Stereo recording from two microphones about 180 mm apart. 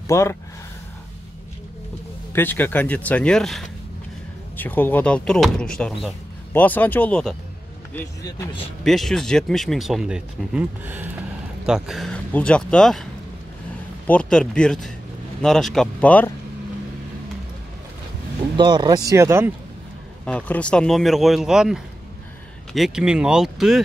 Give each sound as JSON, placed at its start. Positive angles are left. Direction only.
{"t": 0.1, "sound": "speech", "side_deg": 15}
{"t": 2.3, "sound": "speech", "side_deg": 10}
{"t": 7.9, "sound": "speech", "side_deg": 15}
{"t": 8.8, "sound": "speech", "side_deg": 0}
{"t": 18.6, "sound": "speech", "side_deg": -25}
{"t": 20.2, "sound": "speech", "side_deg": 5}